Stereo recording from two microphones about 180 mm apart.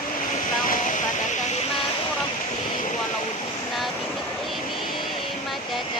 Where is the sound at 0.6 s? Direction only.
50° left (ahead or behind).